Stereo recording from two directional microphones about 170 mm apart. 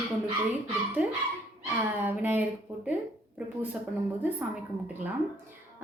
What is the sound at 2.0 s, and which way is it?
Speech, 10° right (ahead or behind).